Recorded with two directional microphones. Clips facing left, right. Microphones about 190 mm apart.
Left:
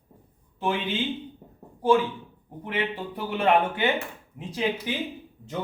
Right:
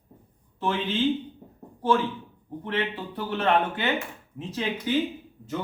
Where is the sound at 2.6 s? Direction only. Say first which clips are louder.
Even; 15° left (ahead or behind).